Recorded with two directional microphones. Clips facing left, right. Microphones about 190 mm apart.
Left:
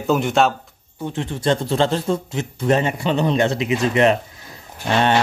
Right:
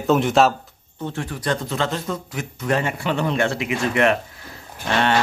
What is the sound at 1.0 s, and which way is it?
Speech, 20° left (ahead or behind).